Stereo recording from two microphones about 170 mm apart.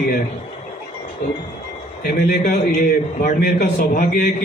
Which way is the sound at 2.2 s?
65° left (ahead or behind).